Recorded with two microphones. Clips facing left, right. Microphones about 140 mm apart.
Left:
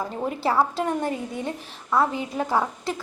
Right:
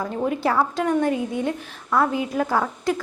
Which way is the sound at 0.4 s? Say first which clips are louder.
Left 1 dB; 30° left (ahead or behind).